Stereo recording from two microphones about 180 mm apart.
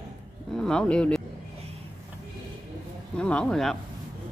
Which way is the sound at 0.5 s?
5° left (ahead or behind).